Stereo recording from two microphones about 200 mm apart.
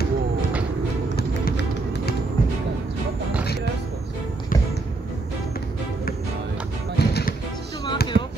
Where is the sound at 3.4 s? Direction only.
55° left (ahead or behind).